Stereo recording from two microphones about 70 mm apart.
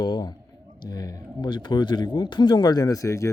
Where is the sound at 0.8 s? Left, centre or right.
Left.